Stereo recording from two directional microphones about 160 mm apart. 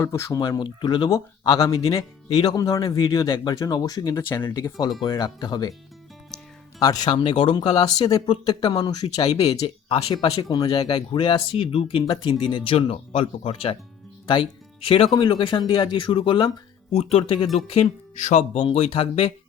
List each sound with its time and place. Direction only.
0.0 s speech: 20° left (ahead or behind)
5.0 s speech: 25° left (ahead or behind)
6.7 s speech: 25° left (ahead or behind)
14.8 s speech: 35° left (ahead or behind)